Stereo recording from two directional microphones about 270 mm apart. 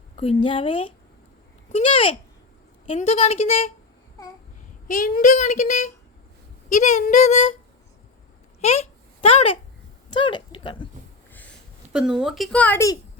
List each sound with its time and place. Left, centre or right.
0.2 s a child's voice: centre
4.9 s a child's voice: left
8.6 s a child's voice: left
11.3 s a sound: centre
11.9 s speech: centre